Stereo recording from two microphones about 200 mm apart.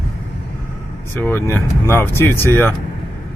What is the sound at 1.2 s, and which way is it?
Speech, 10° left (ahead or behind).